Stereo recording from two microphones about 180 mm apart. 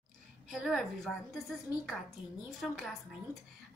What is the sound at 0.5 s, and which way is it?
A woman's voice, centre (ahead or behind).